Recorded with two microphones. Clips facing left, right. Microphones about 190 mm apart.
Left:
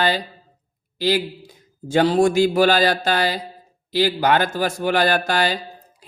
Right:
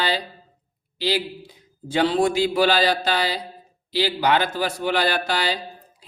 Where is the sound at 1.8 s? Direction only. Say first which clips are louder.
Left 4 dB; 45° left (ahead or behind).